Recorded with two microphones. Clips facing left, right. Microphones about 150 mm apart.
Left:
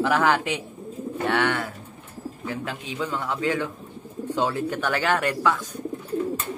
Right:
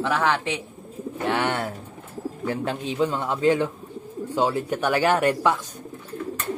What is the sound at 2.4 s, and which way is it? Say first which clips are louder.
Speech: right 5 dB; 35° right (ahead or behind).